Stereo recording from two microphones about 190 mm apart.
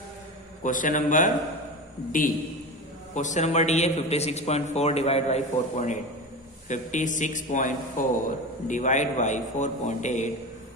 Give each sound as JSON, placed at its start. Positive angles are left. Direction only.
{"t": 0.7, "sound": "a man's voice", "side_deg": 45}
{"t": 3.2, "sound": "a man's voice", "side_deg": 40}